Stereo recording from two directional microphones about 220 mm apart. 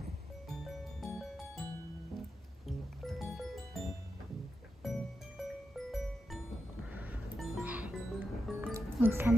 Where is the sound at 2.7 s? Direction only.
Centre (ahead or behind).